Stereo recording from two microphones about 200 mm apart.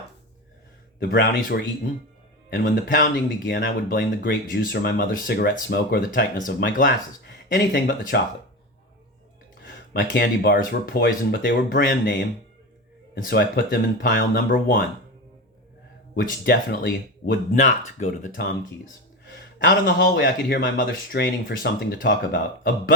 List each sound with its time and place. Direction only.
1.0 s a man's voice: 50° left (ahead or behind)
10.0 s a man's voice: 50° left (ahead or behind)
16.2 s a man's voice: 50° left (ahead or behind)
17.5 s speech: 40° left (ahead or behind)
19.3 s a man's voice: 55° left (ahead or behind)